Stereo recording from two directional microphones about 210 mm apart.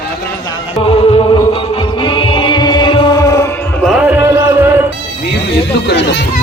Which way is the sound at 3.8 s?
5° right (ahead or behind).